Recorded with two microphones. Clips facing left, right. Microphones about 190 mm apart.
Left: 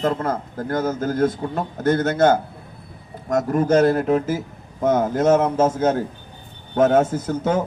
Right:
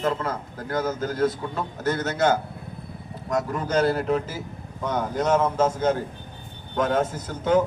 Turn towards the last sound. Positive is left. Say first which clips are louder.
# left 1 dB
turn(degrees=45)  # may be behind; listen again after turning